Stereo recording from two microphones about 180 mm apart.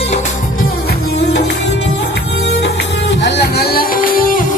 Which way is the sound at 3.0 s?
65° left (ahead or behind).